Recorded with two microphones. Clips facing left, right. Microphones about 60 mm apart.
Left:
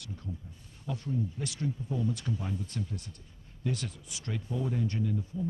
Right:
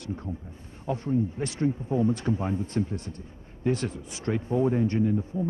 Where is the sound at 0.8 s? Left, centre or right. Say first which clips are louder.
Right 8 dB; right.